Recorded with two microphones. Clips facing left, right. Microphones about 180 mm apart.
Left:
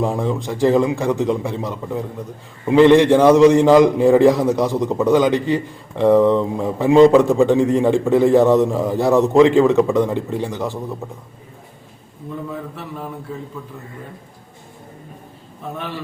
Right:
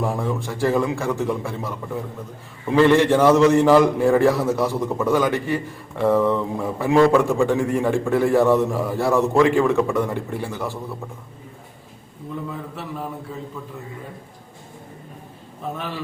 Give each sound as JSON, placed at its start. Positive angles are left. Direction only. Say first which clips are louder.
{"t": 0.0, "sound": "a man's voice", "louder": "left 4 dB", "side_deg": 20}